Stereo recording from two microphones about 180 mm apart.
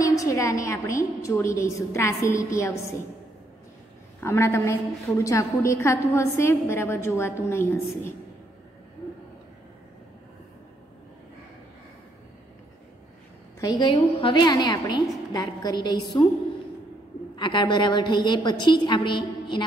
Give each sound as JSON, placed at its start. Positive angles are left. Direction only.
{"t": 0.0, "sound": "a woman's voice", "side_deg": 20}
{"t": 4.2, "sound": "a woman's voice", "side_deg": 15}
{"t": 13.6, "sound": "a woman's voice", "side_deg": 25}
{"t": 17.4, "sound": "a woman's voice", "side_deg": 25}